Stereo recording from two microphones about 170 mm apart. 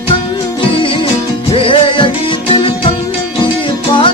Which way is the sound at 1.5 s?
30° left (ahead or behind).